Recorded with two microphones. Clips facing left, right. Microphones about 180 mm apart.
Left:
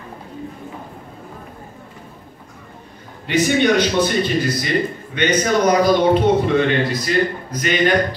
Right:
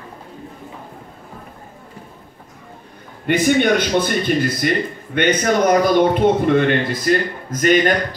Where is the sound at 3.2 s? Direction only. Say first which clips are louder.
Right 1 dB; 55° right (ahead or behind).